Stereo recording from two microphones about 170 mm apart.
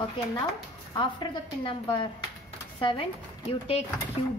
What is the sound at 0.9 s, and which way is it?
A woman's voice, 30° left (ahead or behind).